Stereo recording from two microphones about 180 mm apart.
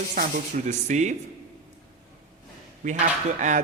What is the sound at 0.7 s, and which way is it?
Speech, 40° right (ahead or behind).